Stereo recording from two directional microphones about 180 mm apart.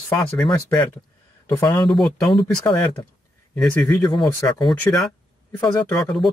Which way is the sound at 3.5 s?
5° left (ahead or behind).